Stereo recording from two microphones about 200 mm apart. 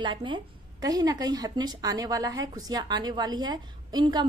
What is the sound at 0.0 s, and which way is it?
A woman's voice, 25° right (ahead or behind).